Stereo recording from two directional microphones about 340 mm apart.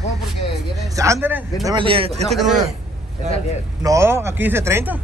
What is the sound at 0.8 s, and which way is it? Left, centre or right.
A man's voice, centre.